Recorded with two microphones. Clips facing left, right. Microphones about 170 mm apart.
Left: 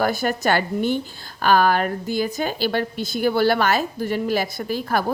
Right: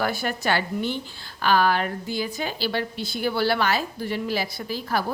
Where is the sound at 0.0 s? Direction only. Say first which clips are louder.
Left 5 dB; 45° left (ahead or behind).